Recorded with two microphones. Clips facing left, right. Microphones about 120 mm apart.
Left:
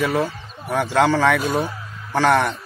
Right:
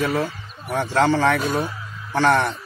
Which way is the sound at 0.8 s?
90° left.